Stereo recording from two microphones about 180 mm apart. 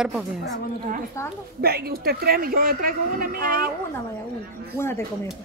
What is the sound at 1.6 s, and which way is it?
Speech, 60° right (ahead or behind).